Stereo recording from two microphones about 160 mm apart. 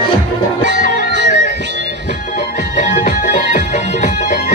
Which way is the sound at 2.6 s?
50° left (ahead or behind).